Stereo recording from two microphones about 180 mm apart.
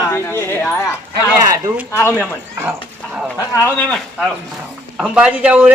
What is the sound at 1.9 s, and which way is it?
Speech, 15° left (ahead or behind).